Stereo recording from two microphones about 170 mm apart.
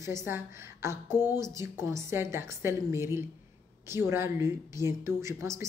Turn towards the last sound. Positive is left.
turn(degrees=-15)  # may be behind; listen again after turning